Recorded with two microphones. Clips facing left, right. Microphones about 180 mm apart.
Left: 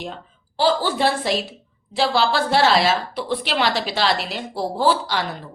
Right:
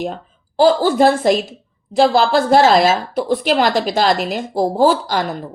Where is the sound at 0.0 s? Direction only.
45° right (ahead or behind).